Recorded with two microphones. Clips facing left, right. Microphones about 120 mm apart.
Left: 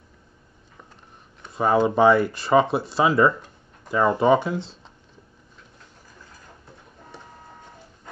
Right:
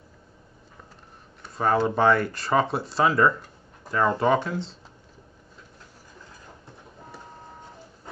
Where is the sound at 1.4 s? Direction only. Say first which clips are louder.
Left 3 dB; 5° left (ahead or behind).